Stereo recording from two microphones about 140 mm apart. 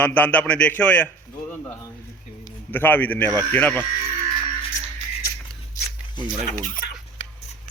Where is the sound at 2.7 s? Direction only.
15° left (ahead or behind).